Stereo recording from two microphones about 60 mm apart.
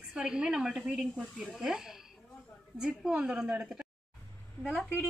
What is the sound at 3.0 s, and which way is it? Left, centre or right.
Speech, centre.